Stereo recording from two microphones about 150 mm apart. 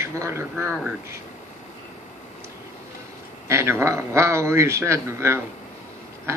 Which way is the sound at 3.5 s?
15° right (ahead or behind).